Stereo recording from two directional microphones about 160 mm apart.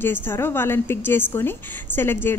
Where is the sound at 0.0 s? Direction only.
15° left (ahead or behind).